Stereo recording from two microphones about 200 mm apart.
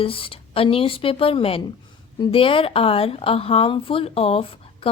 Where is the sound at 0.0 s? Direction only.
25° left (ahead or behind).